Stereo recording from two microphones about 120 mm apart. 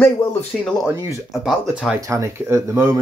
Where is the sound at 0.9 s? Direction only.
25° right (ahead or behind).